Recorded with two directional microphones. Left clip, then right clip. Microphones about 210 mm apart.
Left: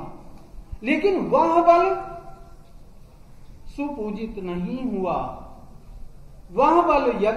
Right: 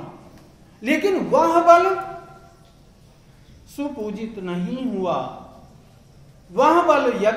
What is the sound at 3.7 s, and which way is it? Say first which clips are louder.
A man's voice: right 1 dB; 25° right (ahead or behind).